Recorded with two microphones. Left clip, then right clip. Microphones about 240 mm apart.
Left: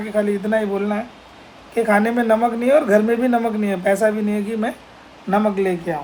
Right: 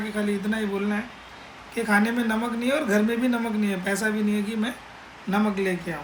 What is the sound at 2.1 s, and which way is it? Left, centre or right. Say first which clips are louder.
Speech: left 10 dB; centre.